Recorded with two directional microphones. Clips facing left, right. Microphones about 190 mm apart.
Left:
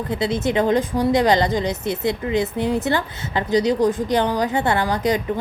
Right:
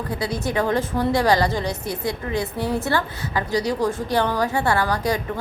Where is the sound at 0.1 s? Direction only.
25° left (ahead or behind).